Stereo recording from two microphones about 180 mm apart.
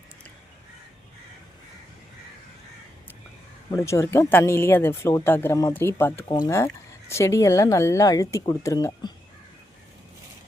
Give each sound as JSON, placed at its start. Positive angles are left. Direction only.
{"t": 3.8, "sound": "speech", "side_deg": 15}
{"t": 6.2, "sound": "speech", "side_deg": 20}